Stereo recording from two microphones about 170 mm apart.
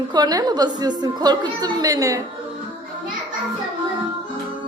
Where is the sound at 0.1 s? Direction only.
25° right (ahead or behind).